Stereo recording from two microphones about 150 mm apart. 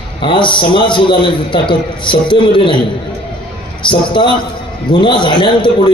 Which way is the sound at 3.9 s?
35° left (ahead or behind).